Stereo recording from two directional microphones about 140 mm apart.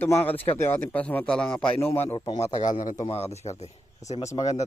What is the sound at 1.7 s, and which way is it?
Speech, 15° left (ahead or behind).